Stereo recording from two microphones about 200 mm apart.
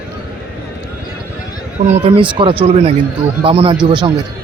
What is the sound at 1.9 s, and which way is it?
Speech, 30° right (ahead or behind).